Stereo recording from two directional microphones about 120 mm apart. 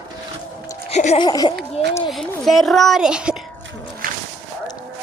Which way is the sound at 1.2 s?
35° left (ahead or behind).